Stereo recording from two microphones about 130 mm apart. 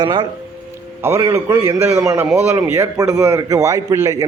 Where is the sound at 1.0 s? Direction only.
20° right (ahead or behind).